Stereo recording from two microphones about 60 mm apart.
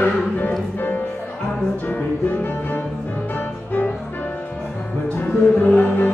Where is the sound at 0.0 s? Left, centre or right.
Left.